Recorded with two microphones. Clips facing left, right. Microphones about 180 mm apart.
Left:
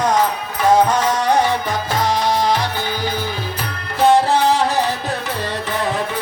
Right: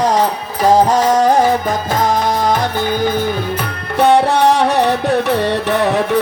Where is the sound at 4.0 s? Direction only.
65° right (ahead or behind).